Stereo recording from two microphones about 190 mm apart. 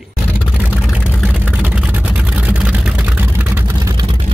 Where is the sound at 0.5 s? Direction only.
5° right (ahead or behind).